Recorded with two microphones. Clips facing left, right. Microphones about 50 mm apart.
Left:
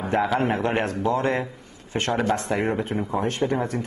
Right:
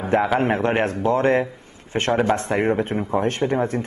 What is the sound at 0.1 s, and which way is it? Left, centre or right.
A man's voice, right.